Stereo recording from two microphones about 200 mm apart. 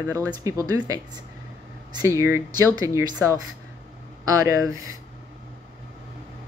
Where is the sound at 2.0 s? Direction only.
15° right (ahead or behind).